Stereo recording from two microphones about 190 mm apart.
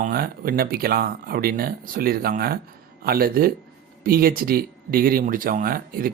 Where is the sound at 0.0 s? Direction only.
50° right (ahead or behind).